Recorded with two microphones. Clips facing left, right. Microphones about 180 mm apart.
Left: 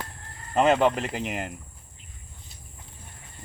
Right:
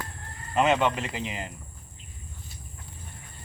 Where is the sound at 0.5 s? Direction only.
40° left (ahead or behind).